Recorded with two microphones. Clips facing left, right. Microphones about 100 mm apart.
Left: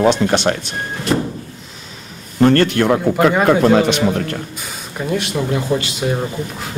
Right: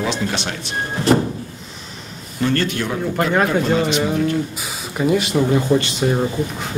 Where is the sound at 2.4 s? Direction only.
60° left (ahead or behind).